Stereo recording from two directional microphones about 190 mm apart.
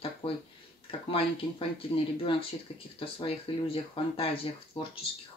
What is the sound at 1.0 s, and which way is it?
Speech, 30° left (ahead or behind).